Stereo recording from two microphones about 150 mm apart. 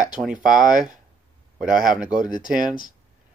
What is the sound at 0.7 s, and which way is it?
Speech, 60° right (ahead or behind).